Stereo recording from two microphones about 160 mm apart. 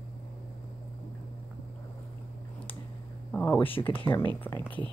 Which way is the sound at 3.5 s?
35° left (ahead or behind).